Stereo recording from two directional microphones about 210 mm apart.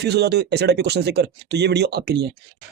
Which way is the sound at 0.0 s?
50° right (ahead or behind).